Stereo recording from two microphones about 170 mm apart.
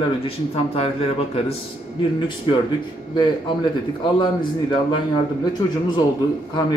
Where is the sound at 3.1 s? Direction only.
30° left (ahead or behind).